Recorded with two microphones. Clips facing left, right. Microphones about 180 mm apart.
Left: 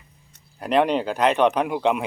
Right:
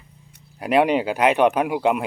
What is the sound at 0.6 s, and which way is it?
Speech, 10° right (ahead or behind).